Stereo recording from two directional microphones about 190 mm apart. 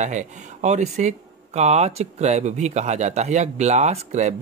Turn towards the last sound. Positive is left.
turn(degrees=-35)  # may be behind; listen again after turning